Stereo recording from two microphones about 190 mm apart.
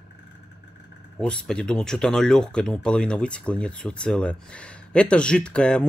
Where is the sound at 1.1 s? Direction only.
5° left (ahead or behind).